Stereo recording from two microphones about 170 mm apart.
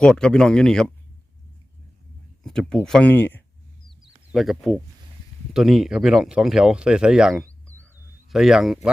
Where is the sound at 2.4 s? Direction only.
5° left (ahead or behind).